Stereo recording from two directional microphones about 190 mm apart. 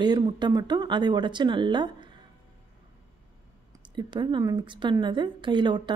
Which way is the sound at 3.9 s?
25° right (ahead or behind).